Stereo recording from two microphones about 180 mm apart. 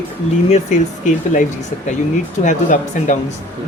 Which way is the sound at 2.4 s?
45° left (ahead or behind).